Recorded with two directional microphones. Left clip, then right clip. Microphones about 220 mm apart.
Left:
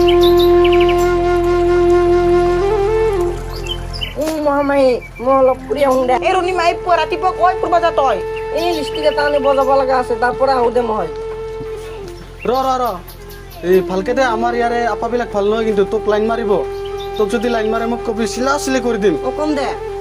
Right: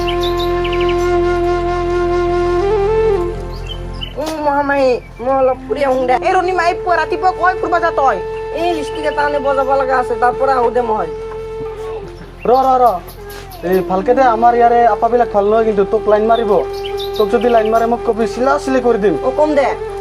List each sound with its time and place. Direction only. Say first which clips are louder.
0.0 s bird: left 6 dB; 30° left (ahead or behind)
0.6 s music: left 5 dB; 35° left (ahead or behind)
1.0 s flute: even; 15° left (ahead or behind)
4.2 s a sound: even; centre (ahead or behind)
6.1 s speech: right 1 dB; centre (ahead or behind)
12.5 s speech: right 6 dB; 25° left (ahead or behind)
19.2 s speech: right 5 dB; 20° left (ahead or behind)